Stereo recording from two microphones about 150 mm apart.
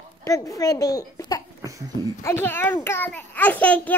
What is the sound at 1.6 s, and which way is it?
Babbling, 20° right (ahead or behind).